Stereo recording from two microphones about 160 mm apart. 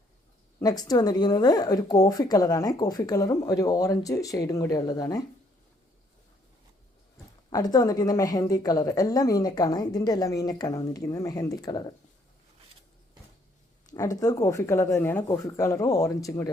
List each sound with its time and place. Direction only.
0.6 s speech: 25° left (ahead or behind)
7.5 s speech: 25° left (ahead or behind)
13.9 s speech: 20° left (ahead or behind)